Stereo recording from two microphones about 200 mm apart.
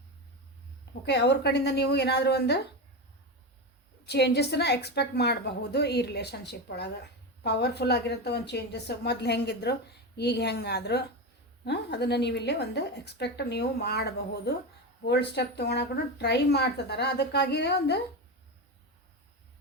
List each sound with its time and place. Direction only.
1.0 s speech: 55° left (ahead or behind)
4.0 s speech: 55° left (ahead or behind)